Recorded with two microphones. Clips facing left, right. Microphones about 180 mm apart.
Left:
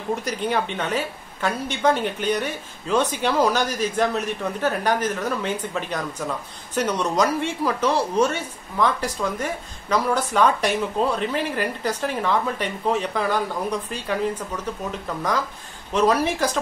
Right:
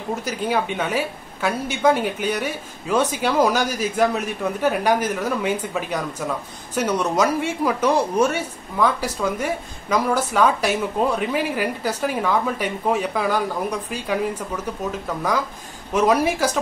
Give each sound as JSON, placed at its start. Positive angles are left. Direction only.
{"t": 0.1, "sound": "speech", "side_deg": -5}
{"t": 15.9, "sound": "speech", "side_deg": -10}